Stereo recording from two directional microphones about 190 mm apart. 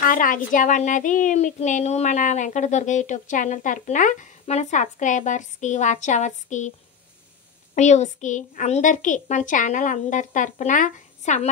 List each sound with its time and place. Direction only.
0.0 s a child's voice: 45° left (ahead or behind)
7.7 s a child's voice: 40° left (ahead or behind)